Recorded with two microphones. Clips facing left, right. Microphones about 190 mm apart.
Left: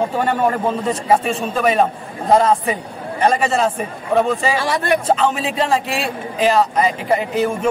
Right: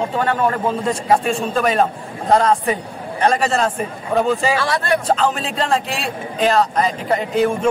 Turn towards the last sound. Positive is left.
turn(degrees=5)  # may be behind; listen again after turning